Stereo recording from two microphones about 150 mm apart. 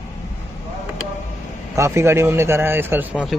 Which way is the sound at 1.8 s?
20° right (ahead or behind).